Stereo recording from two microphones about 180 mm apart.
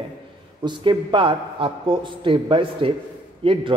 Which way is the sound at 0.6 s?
25° right (ahead or behind).